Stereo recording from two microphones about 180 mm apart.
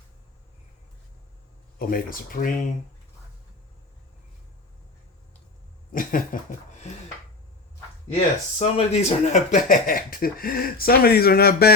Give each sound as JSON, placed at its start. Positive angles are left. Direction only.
{"t": 1.8, "sound": "speech", "side_deg": 55}
{"t": 5.9, "sound": "a sound", "side_deg": 50}
{"t": 8.1, "sound": "speech", "side_deg": 35}